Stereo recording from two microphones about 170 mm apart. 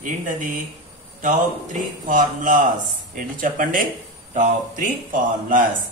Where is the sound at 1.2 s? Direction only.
50° right (ahead or behind).